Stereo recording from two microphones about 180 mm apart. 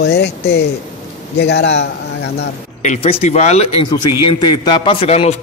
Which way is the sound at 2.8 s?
35° left (ahead or behind).